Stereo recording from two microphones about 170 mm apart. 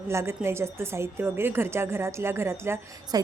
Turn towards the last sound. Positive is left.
turn(degrees=-15)  # may be behind; listen again after turning